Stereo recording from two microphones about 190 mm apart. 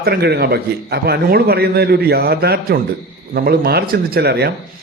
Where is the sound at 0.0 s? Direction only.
60° right (ahead or behind).